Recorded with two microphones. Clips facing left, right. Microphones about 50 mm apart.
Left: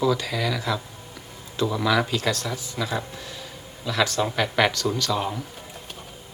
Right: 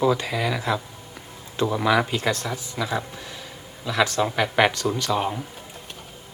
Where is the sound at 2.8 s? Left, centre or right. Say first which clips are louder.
Right 2 dB; centre.